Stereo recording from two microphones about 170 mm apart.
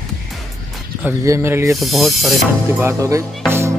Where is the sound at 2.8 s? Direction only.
15° right (ahead or behind).